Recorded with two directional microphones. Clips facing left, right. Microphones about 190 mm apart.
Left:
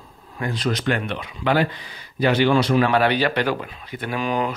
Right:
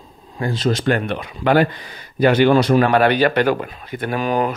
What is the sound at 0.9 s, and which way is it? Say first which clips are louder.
Speech: right 4 dB; 45° right (ahead or behind).